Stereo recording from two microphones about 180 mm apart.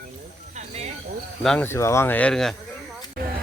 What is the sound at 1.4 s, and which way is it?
Speech, 5° left (ahead or behind).